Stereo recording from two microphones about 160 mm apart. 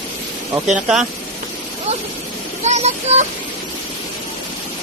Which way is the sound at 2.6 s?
45° right (ahead or behind).